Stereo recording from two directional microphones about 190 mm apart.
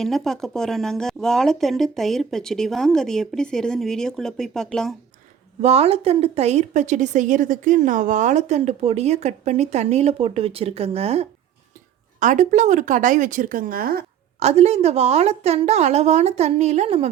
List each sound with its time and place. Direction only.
0.0 s speech: centre (ahead or behind)
5.6 s a woman's voice: 30° right (ahead or behind); by 14.0 s 50° right (ahead or behind)
14.3 s a woman's voice: 35° right (ahead or behind)